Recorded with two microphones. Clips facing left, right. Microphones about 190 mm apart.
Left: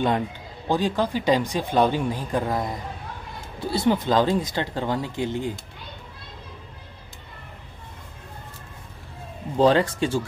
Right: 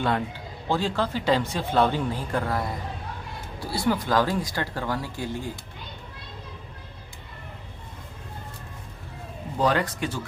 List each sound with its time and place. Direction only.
0.7 s speech: 15° left (ahead or behind)
9.6 s speech: 25° left (ahead or behind)